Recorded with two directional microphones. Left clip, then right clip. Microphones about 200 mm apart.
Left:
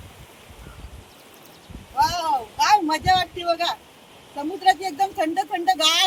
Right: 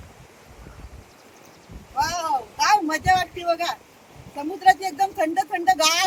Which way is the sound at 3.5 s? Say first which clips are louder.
Even; 5° right (ahead or behind).